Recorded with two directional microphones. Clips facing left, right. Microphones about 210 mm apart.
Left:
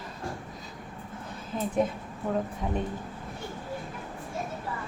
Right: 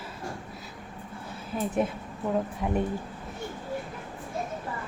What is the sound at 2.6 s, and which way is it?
Speech, 10° right (ahead or behind).